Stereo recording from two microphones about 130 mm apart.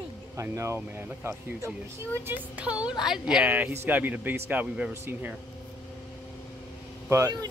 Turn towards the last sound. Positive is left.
turn(degrees=-30)  # may be behind; listen again after turning